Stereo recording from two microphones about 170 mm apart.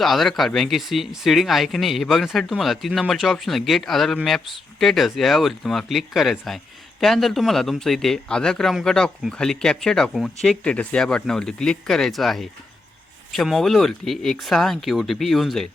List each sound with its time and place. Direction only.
0.0 s speech: centre (ahead or behind)